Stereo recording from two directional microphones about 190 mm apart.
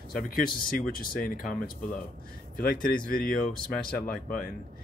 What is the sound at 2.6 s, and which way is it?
Speech, 45° left (ahead or behind).